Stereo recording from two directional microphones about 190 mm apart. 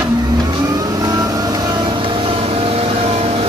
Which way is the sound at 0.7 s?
20° right (ahead or behind).